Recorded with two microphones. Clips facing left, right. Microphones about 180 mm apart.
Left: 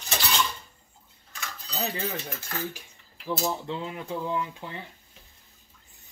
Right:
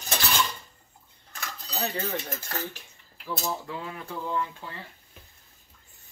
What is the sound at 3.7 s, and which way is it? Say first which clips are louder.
Speech: left 4 dB; 20° left (ahead or behind).